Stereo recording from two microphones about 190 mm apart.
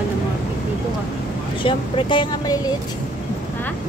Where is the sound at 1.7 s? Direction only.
25° left (ahead or behind).